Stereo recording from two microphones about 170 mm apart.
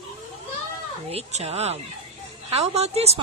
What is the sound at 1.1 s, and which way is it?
A woman's voice, 35° right (ahead or behind).